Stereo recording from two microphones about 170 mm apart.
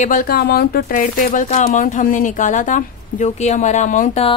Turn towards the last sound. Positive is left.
turn(degrees=45)  # may be behind; listen again after turning